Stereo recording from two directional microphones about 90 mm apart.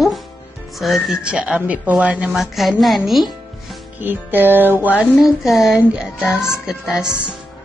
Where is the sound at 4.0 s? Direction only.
20° right (ahead or behind).